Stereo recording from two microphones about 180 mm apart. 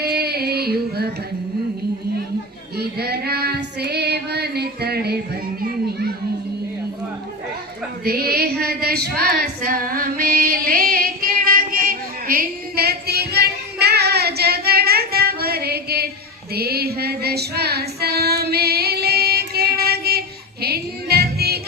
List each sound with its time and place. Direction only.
0.0 s a sound: 60° right (ahead or behind)
2.7 s child singing: 60° right (ahead or behind)
8.0 s female singing: 60° right (ahead or behind)
16.5 s child singing: 60° right (ahead or behind)